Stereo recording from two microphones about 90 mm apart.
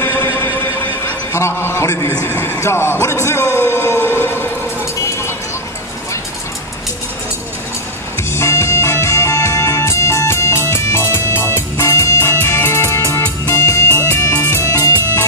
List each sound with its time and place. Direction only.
0.0 s a sound: 25° left (ahead or behind)
1.3 s a man's voice: 30° left (ahead or behind)
8.2 s music: 30° left (ahead or behind)